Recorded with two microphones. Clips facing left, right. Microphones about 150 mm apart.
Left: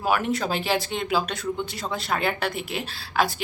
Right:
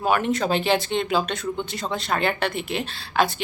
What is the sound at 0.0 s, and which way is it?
A woman's voice, 5° left (ahead or behind).